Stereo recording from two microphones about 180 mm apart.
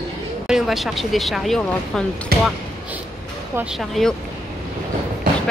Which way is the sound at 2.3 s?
60° right (ahead or behind).